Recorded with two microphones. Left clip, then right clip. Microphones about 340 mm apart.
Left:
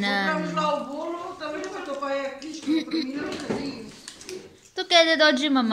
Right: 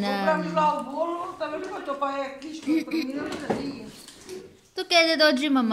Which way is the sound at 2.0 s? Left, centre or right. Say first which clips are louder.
Left 1 dB; centre.